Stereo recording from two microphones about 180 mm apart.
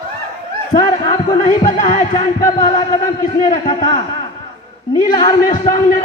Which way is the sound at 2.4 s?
25° left (ahead or behind).